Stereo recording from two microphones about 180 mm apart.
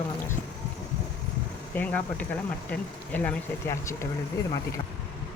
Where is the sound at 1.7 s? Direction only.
10° left (ahead or behind).